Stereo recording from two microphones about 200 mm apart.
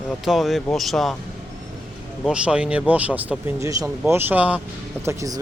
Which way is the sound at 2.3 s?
5° right (ahead or behind).